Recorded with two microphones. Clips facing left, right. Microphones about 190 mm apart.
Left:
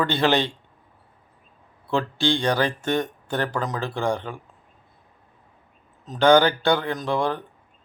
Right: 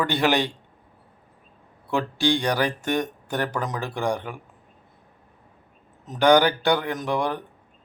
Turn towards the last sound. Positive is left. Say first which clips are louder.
# left 1 dB
turn(degrees=-15)  # may be behind; listen again after turning